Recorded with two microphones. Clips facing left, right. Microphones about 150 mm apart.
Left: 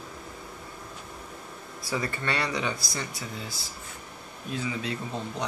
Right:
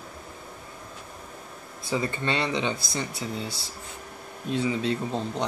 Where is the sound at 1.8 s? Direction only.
20° right (ahead or behind).